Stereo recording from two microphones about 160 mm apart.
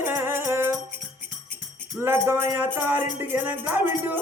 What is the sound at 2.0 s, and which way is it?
Speech, 15° right (ahead or behind).